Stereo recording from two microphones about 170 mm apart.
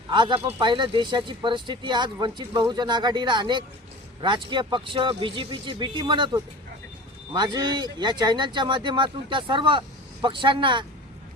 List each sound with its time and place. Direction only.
0.1 s speech: 30° right (ahead or behind)
7.3 s speech: 25° right (ahead or behind)